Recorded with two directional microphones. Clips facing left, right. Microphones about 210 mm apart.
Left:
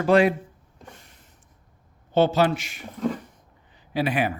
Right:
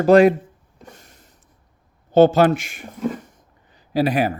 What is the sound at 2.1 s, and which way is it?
Speech, 45° right (ahead or behind).